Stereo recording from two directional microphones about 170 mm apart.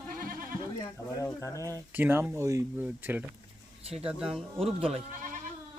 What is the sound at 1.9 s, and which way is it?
Speech, 10° right (ahead or behind).